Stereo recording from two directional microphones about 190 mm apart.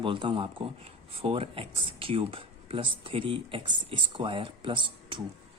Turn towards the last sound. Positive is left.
turn(degrees=-25)  # may be behind; listen again after turning